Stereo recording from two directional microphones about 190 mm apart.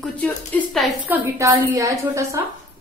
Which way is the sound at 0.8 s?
5° right (ahead or behind).